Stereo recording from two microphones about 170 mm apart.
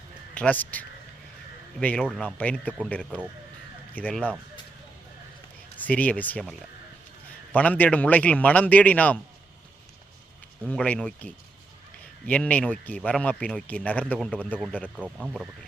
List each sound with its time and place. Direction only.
0.3 s a man's voice: 10° left (ahead or behind)
5.7 s a man's voice: 10° left (ahead or behind)
10.7 s a man's voice: 5° left (ahead or behind)
14.9 s speech: 5° right (ahead or behind)